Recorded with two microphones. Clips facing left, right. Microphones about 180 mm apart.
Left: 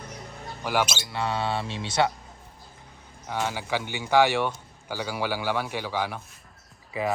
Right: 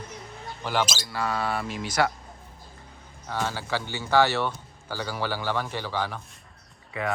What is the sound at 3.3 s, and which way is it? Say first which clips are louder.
Speech: left 1 dB; 15° left (ahead or behind).